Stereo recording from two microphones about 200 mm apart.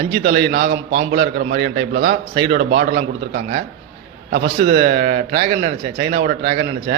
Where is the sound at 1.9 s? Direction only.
55° right (ahead or behind).